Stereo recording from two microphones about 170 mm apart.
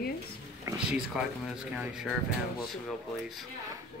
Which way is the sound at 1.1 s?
5° right (ahead or behind).